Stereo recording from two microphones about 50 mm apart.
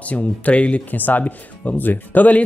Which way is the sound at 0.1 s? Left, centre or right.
Left.